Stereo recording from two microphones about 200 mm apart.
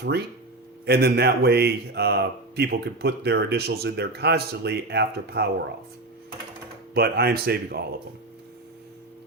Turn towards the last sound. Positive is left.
turn(degrees=-50)  # may be behind; listen again after turning